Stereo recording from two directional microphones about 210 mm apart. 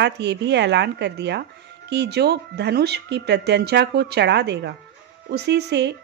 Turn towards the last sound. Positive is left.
turn(degrees=-55)  # may be behind; listen again after turning